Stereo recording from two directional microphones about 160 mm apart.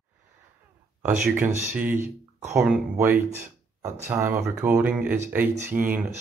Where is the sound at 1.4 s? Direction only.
50° right (ahead or behind).